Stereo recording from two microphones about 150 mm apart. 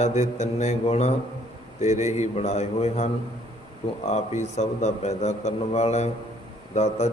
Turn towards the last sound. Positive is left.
turn(degrees=45)  # may be behind; listen again after turning